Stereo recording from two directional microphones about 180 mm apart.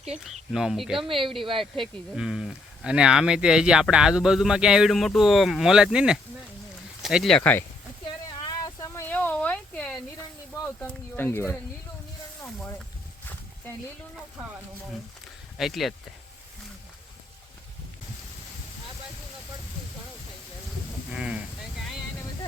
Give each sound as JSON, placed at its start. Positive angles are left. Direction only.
{"t": 0.5, "sound": "speech", "side_deg": 0}
{"t": 1.0, "sound": "speech", "side_deg": -30}
{"t": 1.8, "sound": "speech", "side_deg": 0}
{"t": 8.0, "sound": "a sound", "side_deg": 25}
{"t": 10.8, "sound": "speech", "side_deg": 10}
{"t": 15.5, "sound": "speech", "side_deg": 0}
{"t": 21.1, "sound": "a sound", "side_deg": -5}